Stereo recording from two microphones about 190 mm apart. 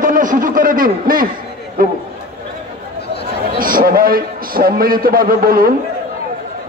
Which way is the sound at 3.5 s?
50° right (ahead or behind).